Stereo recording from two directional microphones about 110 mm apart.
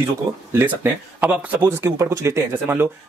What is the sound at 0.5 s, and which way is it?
Speech, 20° right (ahead or behind).